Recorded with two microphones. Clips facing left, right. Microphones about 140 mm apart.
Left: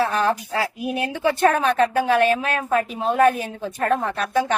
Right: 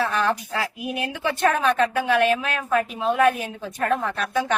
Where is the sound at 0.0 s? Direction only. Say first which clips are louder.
Left 2 dB; 35° left (ahead or behind).